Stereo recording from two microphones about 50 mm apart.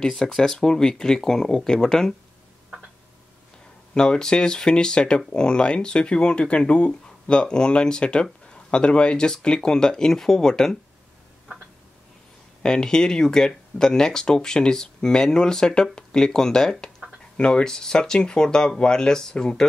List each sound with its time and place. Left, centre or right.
0.1 s speech: centre
3.9 s speech: centre
12.6 s speech: centre